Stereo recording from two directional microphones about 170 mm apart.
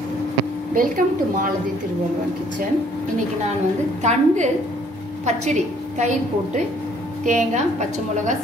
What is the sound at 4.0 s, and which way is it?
A woman's voice, 45° right (ahead or behind).